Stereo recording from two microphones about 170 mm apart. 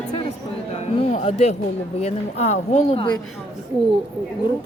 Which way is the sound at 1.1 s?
40° left (ahead or behind).